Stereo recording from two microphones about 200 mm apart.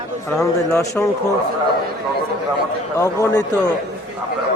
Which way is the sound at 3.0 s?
15° left (ahead or behind).